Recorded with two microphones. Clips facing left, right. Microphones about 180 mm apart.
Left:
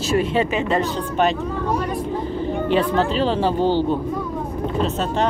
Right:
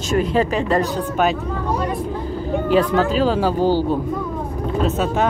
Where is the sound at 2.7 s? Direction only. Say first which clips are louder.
Right 3 dB; 5° right (ahead or behind).